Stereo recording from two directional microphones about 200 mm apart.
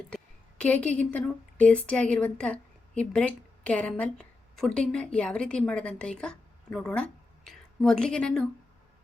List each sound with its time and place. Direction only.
0.6 s a woman's voice: 10° left (ahead or behind)